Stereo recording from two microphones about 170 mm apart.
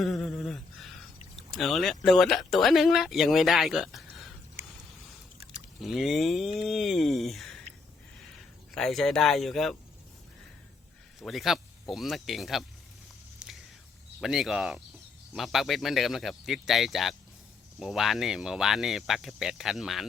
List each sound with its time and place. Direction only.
0.0 s a sound: centre (ahead or behind)
1.5 s speech: centre (ahead or behind)
5.5 s speech: centre (ahead or behind)
8.7 s speech: centre (ahead or behind)
11.2 s speech: centre (ahead or behind)
13.4 s a sound: 5° right (ahead or behind)
14.2 s speech: centre (ahead or behind)